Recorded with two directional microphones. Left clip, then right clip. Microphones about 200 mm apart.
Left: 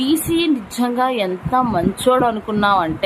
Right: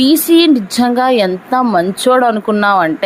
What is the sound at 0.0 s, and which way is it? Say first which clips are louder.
Speech: right 9 dB; 35° right (ahead or behind).